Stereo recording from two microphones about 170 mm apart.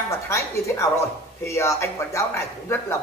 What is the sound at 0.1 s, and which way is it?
A man's voice, 20° left (ahead or behind).